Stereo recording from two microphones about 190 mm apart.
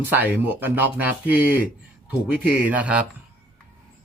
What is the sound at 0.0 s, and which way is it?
Speech, 10° right (ahead or behind).